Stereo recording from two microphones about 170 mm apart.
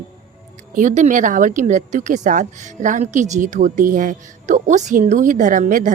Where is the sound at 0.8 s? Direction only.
45° right (ahead or behind).